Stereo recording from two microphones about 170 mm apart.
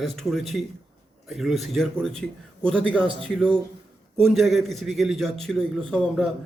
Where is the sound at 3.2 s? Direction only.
5° left (ahead or behind).